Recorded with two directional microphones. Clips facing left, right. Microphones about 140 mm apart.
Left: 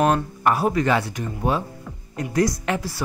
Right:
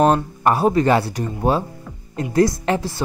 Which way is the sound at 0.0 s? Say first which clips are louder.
Right 3 dB; 30° right (ahead or behind).